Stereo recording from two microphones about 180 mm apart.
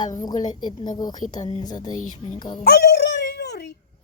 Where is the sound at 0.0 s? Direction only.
20° left (ahead or behind).